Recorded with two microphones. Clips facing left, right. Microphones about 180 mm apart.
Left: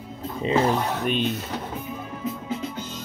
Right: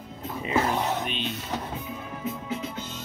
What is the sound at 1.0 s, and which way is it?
Speech, 45° left (ahead or behind).